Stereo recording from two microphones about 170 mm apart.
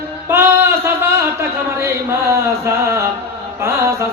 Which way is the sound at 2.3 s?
15° right (ahead or behind).